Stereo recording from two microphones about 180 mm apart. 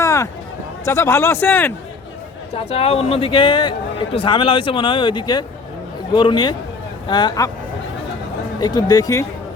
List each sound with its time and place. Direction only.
0.0 s a sound: 15° left (ahead or behind)
0.9 s a man's voice: 15° left (ahead or behind)
2.6 s a man's voice: 30° left (ahead or behind)
8.6 s a man's voice: 20° left (ahead or behind)